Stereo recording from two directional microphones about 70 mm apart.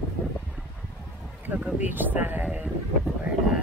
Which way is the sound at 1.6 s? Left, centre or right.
Right.